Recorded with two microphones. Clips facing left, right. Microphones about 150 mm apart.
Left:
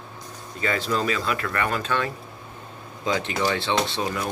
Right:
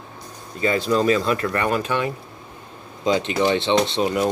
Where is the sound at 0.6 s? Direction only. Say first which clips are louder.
Right 5 dB; 20° right (ahead or behind).